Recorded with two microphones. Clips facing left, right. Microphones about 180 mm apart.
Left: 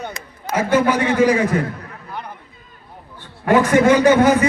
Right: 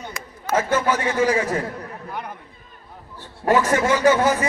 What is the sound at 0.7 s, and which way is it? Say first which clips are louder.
Speech: left 5 dB; 15° left (ahead or behind).